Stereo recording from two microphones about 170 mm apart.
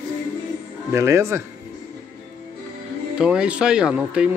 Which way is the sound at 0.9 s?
15° right (ahead or behind).